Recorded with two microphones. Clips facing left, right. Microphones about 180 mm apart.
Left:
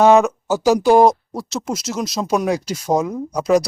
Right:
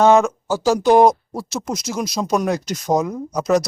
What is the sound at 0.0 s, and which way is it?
Speech, 10° left (ahead or behind).